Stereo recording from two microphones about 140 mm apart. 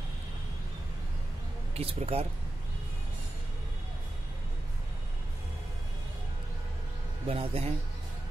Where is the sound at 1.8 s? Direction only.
45° right (ahead or behind).